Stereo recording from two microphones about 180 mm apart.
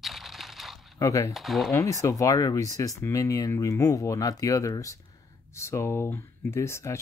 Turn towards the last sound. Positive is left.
turn(degrees=15)  # may be behind; listen again after turning